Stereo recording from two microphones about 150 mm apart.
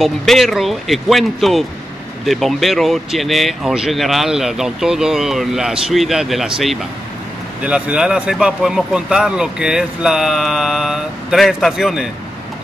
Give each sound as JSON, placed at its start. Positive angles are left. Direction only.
{"t": 0.0, "sound": "speech", "side_deg": 0}